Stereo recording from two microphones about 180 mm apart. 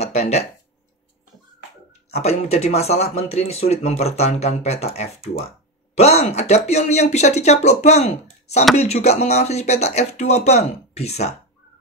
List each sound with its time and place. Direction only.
0.0 s a sound: 35° left (ahead or behind)
2.0 s speech: 35° left (ahead or behind)
5.9 s speech: 35° left (ahead or behind)